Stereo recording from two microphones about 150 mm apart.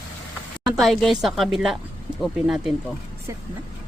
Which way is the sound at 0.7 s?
Centre (ahead or behind).